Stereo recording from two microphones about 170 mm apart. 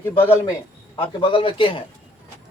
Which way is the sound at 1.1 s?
30° left (ahead or behind).